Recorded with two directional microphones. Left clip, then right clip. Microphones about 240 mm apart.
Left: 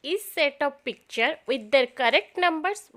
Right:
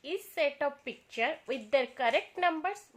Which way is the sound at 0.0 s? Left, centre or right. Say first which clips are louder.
Left 6 dB; left.